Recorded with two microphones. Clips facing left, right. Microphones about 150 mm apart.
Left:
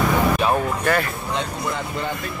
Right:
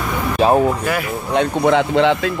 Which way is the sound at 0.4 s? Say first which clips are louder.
Right 6 dB; 35° right (ahead or behind).